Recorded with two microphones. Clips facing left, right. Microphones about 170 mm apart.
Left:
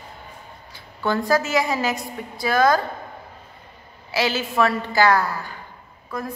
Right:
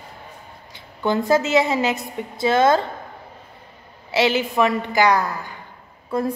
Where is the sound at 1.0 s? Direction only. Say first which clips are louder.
Right 2 dB; 20° right (ahead or behind).